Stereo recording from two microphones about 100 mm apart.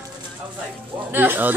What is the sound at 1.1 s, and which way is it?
Speech, 20° right (ahead or behind).